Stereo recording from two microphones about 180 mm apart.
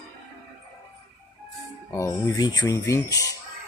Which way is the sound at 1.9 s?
15° left (ahead or behind).